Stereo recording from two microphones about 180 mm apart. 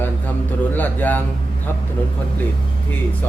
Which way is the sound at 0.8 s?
10° left (ahead or behind).